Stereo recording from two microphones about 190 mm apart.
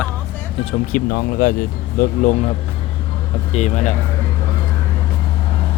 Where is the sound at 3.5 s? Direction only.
40° left (ahead or behind).